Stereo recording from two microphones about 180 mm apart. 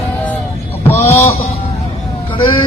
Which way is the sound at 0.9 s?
10° left (ahead or behind).